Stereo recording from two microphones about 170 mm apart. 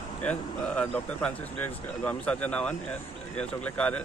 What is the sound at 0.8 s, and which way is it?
Speech, 10° left (ahead or behind).